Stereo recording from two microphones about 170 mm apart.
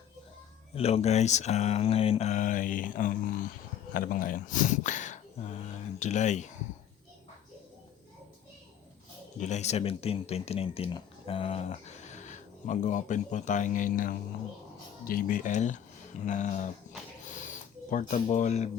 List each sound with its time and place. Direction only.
0.8 s speech: 35° left (ahead or behind)
9.4 s speech: 40° left (ahead or behind)
17.2 s a sound: 50° left (ahead or behind)